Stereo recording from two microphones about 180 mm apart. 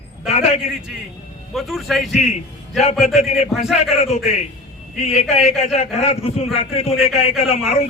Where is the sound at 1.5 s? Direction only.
Centre (ahead or behind).